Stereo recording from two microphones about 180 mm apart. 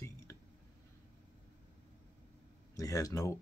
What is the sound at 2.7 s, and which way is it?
Speech, 20° left (ahead or behind).